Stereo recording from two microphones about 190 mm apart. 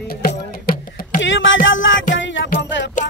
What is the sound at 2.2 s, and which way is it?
Music, 75° left (ahead or behind).